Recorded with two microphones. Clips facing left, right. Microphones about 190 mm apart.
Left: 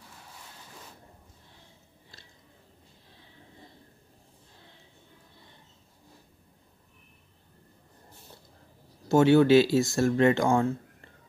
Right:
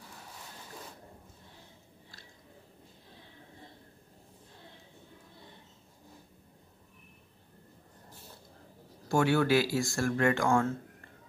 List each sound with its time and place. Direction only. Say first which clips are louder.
9.1 s speech: left 7 dB; 20° left (ahead or behind)